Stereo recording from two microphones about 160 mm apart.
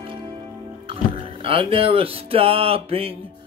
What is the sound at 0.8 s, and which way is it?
Music, 35° right (ahead or behind).